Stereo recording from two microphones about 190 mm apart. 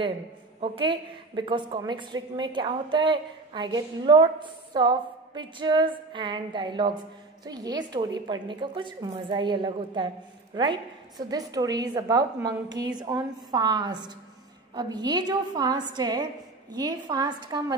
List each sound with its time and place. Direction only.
0.6 s a woman's voice: 25° right (ahead or behind)